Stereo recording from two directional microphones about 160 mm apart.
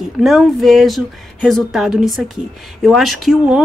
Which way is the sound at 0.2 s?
Centre (ahead or behind).